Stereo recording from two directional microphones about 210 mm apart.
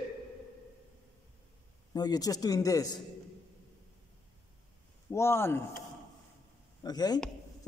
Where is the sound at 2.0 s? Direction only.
20° left (ahead or behind).